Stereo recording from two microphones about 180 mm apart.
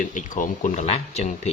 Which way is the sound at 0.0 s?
45° left (ahead or behind).